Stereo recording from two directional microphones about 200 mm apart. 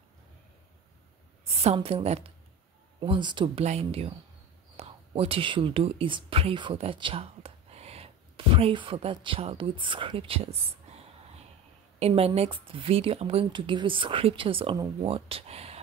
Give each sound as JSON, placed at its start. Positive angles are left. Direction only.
{"t": 1.4, "sound": "a woman's voice", "side_deg": -30}
{"t": 10.7, "sound": "a sound", "side_deg": -30}
{"t": 12.0, "sound": "speech", "side_deg": -30}